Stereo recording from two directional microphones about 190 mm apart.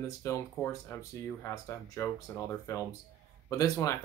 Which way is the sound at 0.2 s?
15° left (ahead or behind).